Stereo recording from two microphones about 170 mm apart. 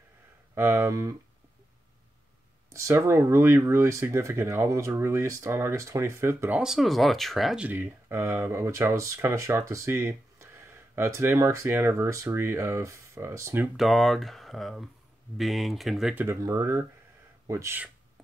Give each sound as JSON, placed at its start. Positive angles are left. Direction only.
{"t": 0.6, "sound": "speech", "side_deg": -15}
{"t": 2.7, "sound": "speech", "side_deg": -15}
{"t": 6.6, "sound": "speech", "side_deg": 0}
{"t": 13.7, "sound": "speech", "side_deg": 0}
{"t": 16.3, "sound": "speech", "side_deg": -15}